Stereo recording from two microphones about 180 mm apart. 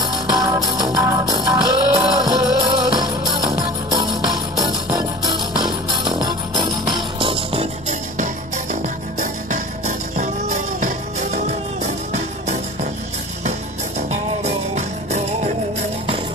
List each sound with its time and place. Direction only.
0.0 s music: 25° right (ahead or behind)
8.8 s music: 45° right (ahead or behind)
13.9 s music: 40° right (ahead or behind)